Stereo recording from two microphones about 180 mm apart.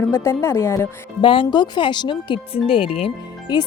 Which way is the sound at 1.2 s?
30° left (ahead or behind).